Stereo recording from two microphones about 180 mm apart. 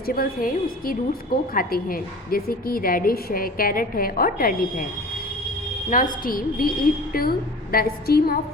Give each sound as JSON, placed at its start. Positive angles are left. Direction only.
{"t": 0.0, "sound": "a woman's voice", "side_deg": 55}
{"t": 5.9, "sound": "a woman's voice", "side_deg": 50}